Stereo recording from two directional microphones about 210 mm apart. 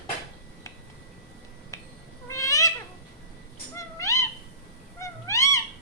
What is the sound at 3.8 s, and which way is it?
Cat, 15° left (ahead or behind).